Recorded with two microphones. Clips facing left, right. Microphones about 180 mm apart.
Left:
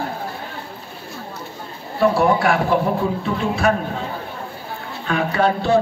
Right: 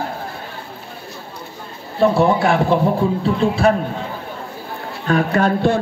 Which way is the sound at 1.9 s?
25° right (ahead or behind).